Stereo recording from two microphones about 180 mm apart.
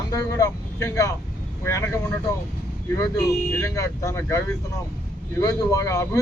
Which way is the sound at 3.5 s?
15° left (ahead or behind).